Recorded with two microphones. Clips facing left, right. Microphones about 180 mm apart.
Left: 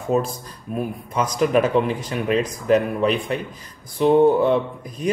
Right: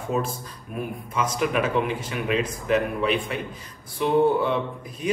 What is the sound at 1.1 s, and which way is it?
Speech, 40° left (ahead or behind).